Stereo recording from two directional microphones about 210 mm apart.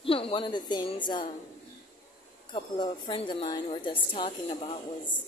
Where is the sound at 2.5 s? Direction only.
25° left (ahead or behind).